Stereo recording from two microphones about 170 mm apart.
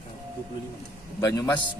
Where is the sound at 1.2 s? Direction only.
20° left (ahead or behind).